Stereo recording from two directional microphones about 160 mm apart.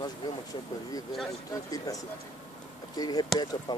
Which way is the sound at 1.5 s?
20° left (ahead or behind).